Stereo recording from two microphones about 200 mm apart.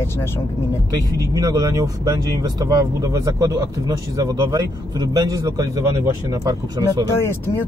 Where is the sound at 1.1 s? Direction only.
15° right (ahead or behind).